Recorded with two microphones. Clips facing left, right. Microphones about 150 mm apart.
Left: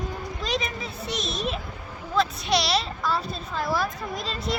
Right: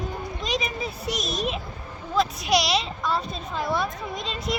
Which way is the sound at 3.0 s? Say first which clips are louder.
Even; 5° left (ahead or behind).